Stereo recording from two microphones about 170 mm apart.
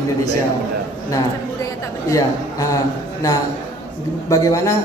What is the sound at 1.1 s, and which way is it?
A man's voice, 20° left (ahead or behind).